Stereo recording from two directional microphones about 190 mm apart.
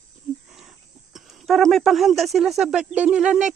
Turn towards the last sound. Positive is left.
turn(degrees=-5)  # may be behind; listen again after turning